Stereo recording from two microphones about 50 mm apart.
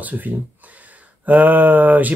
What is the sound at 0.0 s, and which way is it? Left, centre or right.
Speech, right.